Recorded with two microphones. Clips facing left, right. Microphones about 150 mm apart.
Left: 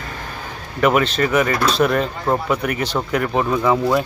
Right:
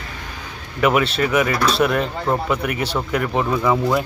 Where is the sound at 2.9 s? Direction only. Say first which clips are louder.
Left 2 dB; 5° left (ahead or behind).